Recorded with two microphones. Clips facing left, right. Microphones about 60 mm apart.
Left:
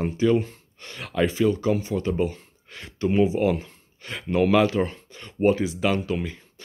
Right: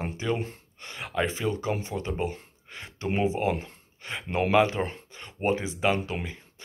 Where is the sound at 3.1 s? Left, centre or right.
Right.